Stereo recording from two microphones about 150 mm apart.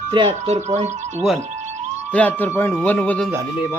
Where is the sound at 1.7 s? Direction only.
50° right (ahead or behind).